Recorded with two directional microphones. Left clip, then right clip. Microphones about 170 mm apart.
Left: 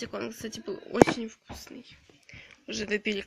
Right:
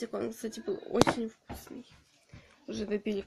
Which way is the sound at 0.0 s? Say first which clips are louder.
Even; 5° left (ahead or behind).